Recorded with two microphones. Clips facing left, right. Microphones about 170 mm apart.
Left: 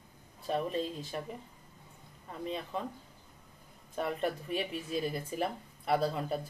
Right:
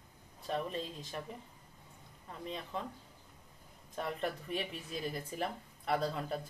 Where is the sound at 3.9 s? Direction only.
10° left (ahead or behind).